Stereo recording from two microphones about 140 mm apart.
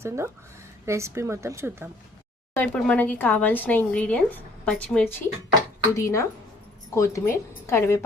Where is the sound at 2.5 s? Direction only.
10° left (ahead or behind).